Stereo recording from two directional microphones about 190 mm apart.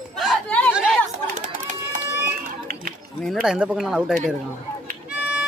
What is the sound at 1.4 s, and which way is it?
Run, 40° right (ahead or behind).